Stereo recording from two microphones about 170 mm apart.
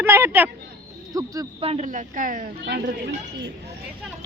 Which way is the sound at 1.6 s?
40° right (ahead or behind).